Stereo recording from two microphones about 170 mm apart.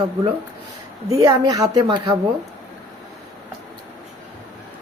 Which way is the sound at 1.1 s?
20° right (ahead or behind).